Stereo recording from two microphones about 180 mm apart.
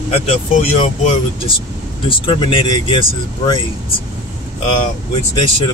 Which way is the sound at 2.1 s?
30° left (ahead or behind).